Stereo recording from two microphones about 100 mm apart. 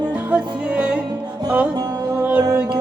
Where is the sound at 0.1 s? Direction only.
10° right (ahead or behind).